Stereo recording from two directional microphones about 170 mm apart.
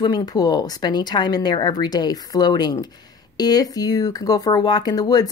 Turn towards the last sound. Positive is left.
turn(degrees=25)  # may be behind; listen again after turning